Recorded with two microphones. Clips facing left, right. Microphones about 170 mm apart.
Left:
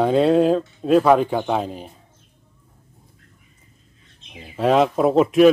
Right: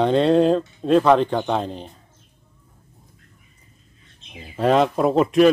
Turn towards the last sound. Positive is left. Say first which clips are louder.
# left 2 dB
turn(degrees=5)  # may be behind; listen again after turning